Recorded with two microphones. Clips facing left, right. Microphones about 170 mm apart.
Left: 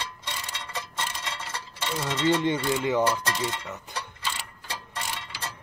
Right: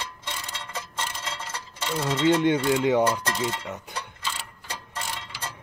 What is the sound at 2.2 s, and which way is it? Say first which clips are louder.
Speech: right 3 dB; 15° right (ahead or behind).